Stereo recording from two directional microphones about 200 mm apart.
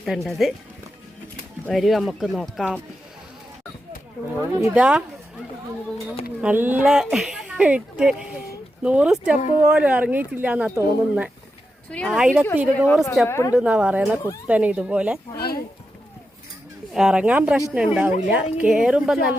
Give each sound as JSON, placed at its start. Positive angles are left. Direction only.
{"t": 0.0, "sound": "speech", "side_deg": 0}
{"t": 1.6, "sound": "speech", "side_deg": 0}
{"t": 4.6, "sound": "speech", "side_deg": -5}
{"t": 6.4, "sound": "speech", "side_deg": -10}
{"t": 11.9, "sound": "speech", "side_deg": 5}
{"t": 13.2, "sound": "a woman's voice", "side_deg": 15}
{"t": 13.5, "sound": "speech", "side_deg": -5}
{"t": 16.9, "sound": "speech", "side_deg": -5}